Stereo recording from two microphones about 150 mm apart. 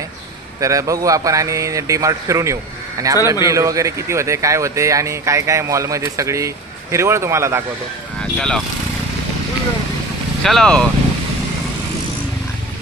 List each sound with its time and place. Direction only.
0.6 s speech: 20° right (ahead or behind)
8.4 s speech: 5° left (ahead or behind)
10.4 s speech: 5° left (ahead or behind)